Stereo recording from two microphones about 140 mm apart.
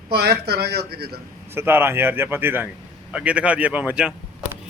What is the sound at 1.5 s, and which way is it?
A man's voice, 15° right (ahead or behind).